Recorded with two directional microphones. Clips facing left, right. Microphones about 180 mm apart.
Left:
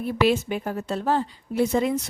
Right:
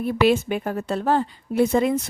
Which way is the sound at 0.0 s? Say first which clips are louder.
Right 3 dB; 60° right (ahead or behind).